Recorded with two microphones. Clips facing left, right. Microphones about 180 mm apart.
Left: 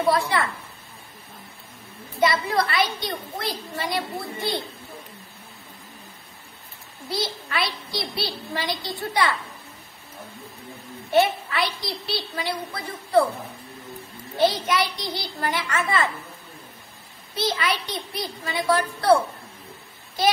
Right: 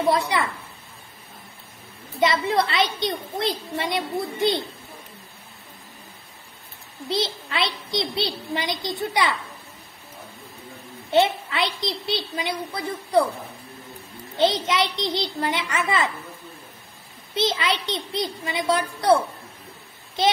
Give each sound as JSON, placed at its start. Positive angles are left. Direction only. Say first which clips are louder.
{"t": 0.0, "sound": "a woman's voice", "louder": "even", "side_deg": -20}
{"t": 2.1, "sound": "a woman's voice", "louder": "right 1 dB", "side_deg": -20}
{"t": 7.1, "sound": "a woman's voice", "louder": "right 3 dB", "side_deg": -20}
{"t": 11.1, "sound": "a woman's voice", "louder": "even", "side_deg": -20}
{"t": 14.3, "sound": "a woman's voice", "louder": "even", "side_deg": -20}
{"t": 17.3, "sound": "a woman's voice", "louder": "right 2 dB", "side_deg": -20}